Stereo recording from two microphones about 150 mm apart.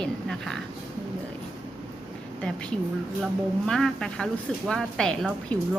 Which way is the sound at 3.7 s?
5° left (ahead or behind).